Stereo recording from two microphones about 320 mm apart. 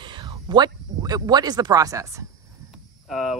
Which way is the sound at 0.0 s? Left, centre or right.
Centre.